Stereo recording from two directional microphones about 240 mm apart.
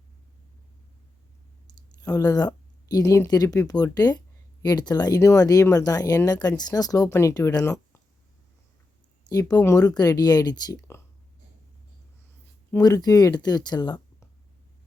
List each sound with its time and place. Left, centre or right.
2.0 s speech: centre
9.3 s speech: centre
12.7 s speech: centre